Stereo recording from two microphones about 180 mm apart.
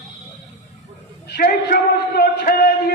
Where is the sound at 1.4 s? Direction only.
60° left (ahead or behind).